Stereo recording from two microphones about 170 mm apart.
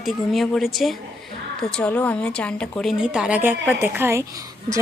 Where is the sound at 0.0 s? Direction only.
Centre (ahead or behind).